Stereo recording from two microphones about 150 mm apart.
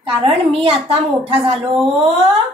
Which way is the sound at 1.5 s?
40° right (ahead or behind).